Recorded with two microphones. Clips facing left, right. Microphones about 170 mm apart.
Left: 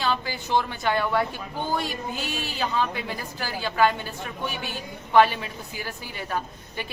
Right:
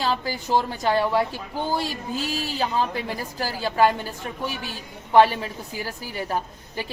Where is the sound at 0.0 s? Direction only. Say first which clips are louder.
Right 2 dB; 35° right (ahead or behind).